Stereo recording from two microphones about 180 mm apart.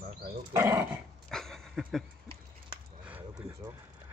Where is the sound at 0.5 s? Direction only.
15° right (ahead or behind).